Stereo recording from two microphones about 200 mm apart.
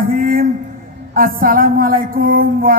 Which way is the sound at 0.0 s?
45° right (ahead or behind).